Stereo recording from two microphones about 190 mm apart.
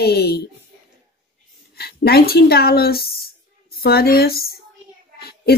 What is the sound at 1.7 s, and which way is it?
Speech, 55° left (ahead or behind).